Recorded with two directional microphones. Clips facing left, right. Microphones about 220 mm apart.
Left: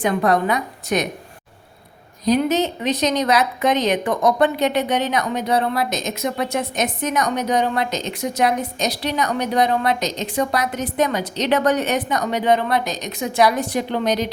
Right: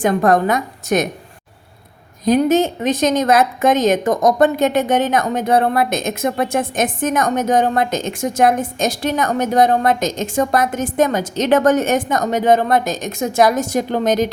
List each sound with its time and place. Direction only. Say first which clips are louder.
0.0 s speech: right 4 dB; 45° right (ahead or behind)
2.2 s speech: right 4 dB; 50° right (ahead or behind)